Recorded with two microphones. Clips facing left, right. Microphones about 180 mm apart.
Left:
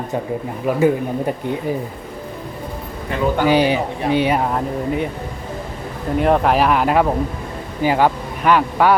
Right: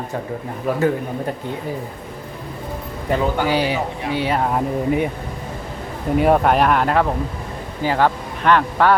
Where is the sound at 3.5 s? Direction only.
20° left (ahead or behind).